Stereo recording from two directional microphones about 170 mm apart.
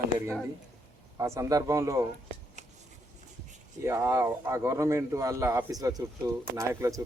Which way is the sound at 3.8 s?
15° right (ahead or behind).